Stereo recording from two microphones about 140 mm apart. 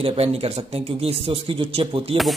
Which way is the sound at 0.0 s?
45° right (ahead or behind).